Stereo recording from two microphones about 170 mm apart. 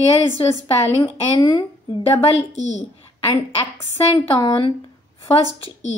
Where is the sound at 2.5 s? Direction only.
40° left (ahead or behind).